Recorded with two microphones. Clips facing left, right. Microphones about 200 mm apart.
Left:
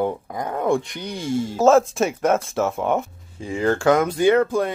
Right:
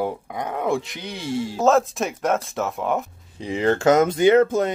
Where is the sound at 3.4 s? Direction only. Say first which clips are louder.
Right 1 dB; 20° right (ahead or behind).